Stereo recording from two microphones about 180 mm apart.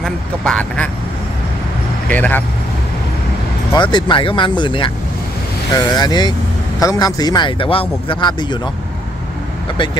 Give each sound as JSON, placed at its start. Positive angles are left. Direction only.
{"t": 0.0, "sound": "speech", "side_deg": 5}
{"t": 2.0, "sound": "speech", "side_deg": 10}
{"t": 3.9, "sound": "speech", "side_deg": 30}
{"t": 9.7, "sound": "speech", "side_deg": 30}